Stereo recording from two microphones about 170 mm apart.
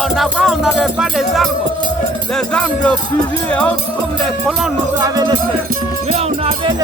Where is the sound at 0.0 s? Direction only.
Centre (ahead or behind).